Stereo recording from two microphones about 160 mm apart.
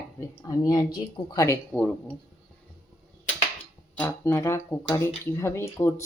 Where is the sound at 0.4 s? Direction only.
25° left (ahead or behind).